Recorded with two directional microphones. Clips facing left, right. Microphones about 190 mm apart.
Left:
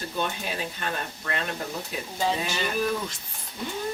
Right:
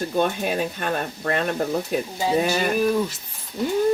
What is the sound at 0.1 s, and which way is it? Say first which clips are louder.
Speech: right 7 dB; 50° right (ahead or behind).